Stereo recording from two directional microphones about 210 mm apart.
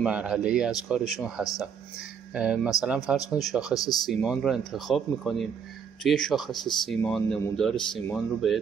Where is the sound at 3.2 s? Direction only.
15° left (ahead or behind).